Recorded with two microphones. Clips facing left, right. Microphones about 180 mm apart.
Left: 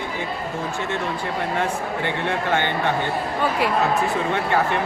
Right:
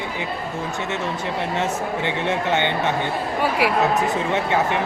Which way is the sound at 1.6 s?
20° right (ahead or behind).